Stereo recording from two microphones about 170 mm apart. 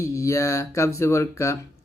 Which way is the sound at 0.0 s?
20° left (ahead or behind).